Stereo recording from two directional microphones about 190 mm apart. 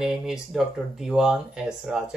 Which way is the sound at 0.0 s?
Centre (ahead or behind).